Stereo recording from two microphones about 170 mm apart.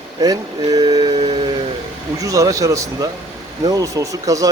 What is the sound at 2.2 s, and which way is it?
Speech, 20° right (ahead or behind).